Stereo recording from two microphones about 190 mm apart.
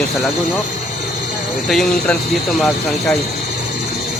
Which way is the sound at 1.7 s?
Centre (ahead or behind).